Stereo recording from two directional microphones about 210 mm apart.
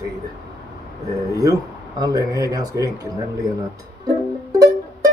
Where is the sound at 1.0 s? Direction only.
15° right (ahead or behind).